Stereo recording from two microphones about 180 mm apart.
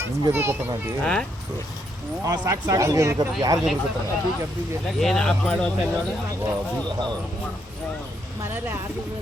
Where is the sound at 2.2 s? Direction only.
20° right (ahead or behind).